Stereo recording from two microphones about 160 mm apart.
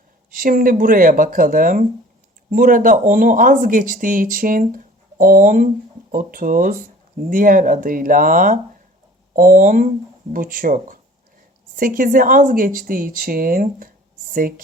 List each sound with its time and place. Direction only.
0.3 s speech: 60° right (ahead or behind)